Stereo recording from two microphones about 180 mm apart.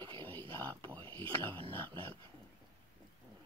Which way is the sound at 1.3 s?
30° right (ahead or behind).